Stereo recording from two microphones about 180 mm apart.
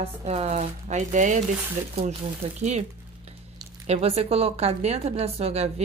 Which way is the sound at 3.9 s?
35° right (ahead or behind).